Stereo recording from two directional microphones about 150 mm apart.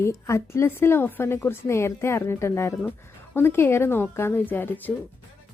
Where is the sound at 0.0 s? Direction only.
20° left (ahead or behind).